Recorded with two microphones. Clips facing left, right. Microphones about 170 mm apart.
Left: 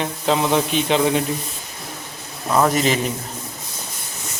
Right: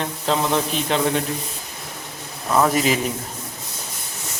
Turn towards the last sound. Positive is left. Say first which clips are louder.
# left 1 dB
turn(degrees=-5)  # may be behind; listen again after turning